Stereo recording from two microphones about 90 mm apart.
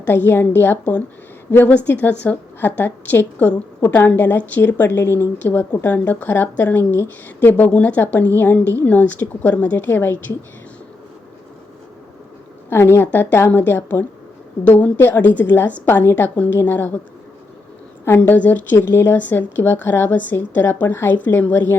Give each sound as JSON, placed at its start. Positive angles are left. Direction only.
{"t": 0.0, "sound": "a woman's voice", "side_deg": 25}
{"t": 12.7, "sound": "a woman's voice", "side_deg": 25}
{"t": 18.0, "sound": "a woman's voice", "side_deg": 25}